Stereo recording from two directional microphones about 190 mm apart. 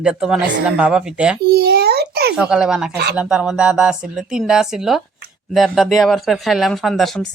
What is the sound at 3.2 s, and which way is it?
Speech, 5° right (ahead or behind).